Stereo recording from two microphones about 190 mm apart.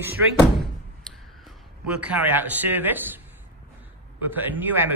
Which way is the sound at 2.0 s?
5° right (ahead or behind).